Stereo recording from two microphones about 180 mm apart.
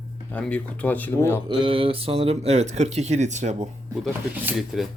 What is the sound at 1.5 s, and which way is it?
Speech, 30° right (ahead or behind).